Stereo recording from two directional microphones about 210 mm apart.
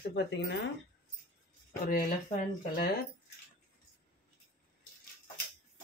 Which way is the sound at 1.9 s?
40° left (ahead or behind).